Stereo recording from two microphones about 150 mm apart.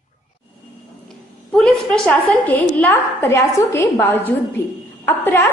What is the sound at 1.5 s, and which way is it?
A woman's voice, 5° left (ahead or behind).